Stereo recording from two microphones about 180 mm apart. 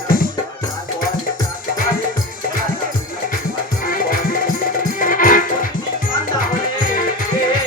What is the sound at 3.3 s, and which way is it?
Music, 50° left (ahead or behind).